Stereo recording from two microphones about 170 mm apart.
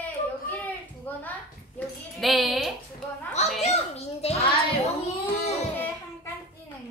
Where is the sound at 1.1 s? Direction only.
10° left (ahead or behind).